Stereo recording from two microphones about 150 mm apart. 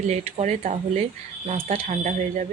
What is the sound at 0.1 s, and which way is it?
Speech, 45° right (ahead or behind).